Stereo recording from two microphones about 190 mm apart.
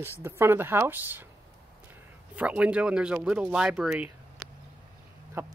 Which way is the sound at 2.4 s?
5° right (ahead or behind).